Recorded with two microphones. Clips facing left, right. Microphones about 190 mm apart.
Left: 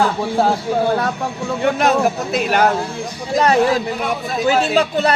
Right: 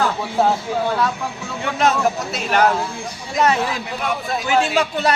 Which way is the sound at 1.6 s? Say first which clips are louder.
Left 3 dB; 55° left (ahead or behind).